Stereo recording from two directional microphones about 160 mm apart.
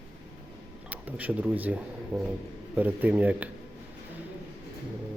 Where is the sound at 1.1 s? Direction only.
10° right (ahead or behind).